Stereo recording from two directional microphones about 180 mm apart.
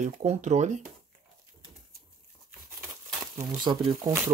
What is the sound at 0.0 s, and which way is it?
Speech, 40° right (ahead or behind).